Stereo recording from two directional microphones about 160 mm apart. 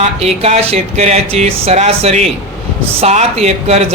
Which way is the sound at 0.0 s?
40° right (ahead or behind).